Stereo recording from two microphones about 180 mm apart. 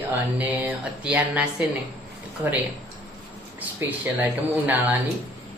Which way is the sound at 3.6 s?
10° right (ahead or behind).